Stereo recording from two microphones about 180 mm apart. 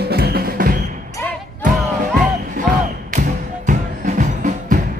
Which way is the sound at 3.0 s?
45° right (ahead or behind).